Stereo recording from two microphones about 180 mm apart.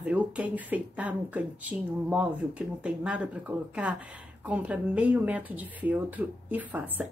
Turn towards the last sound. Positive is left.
turn(degrees=-10)  # may be behind; listen again after turning